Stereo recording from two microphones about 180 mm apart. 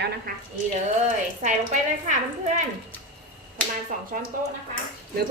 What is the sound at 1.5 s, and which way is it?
Speech, 45° right (ahead or behind).